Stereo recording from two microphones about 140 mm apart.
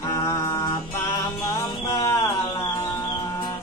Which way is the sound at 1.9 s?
20° left (ahead or behind).